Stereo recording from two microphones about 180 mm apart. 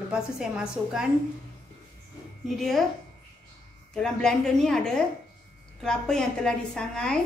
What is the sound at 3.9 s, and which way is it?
A woman's voice, 5° left (ahead or behind).